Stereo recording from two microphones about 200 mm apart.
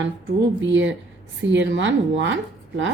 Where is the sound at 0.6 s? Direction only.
70° right (ahead or behind).